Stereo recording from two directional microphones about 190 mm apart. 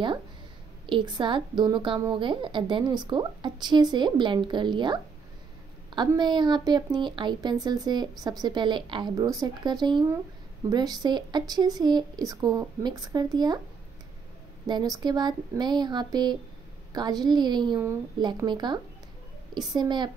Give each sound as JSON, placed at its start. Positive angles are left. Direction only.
{"t": 0.8, "sound": "a woman's voice", "side_deg": -25}
{"t": 14.7, "sound": "a woman's voice", "side_deg": -20}